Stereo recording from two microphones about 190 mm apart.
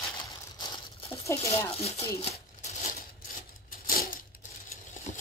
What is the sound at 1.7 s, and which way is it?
Speech, 30° left (ahead or behind).